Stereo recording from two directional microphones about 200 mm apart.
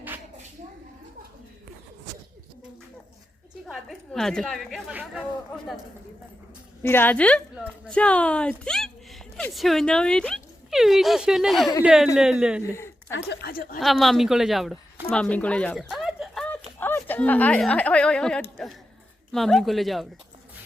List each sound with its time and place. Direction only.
3.7 s speech: centre (ahead or behind)
6.8 s a woman's voice: 10° left (ahead or behind)
13.1 s a woman's voice: 60° left (ahead or behind)
13.7 s speech: centre (ahead or behind)
18.5 s a sound: centre (ahead or behind)
19.3 s speech: centre (ahead or behind)